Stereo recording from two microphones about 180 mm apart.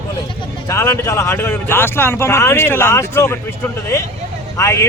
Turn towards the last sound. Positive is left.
turn(degrees=15)  # may be behind; listen again after turning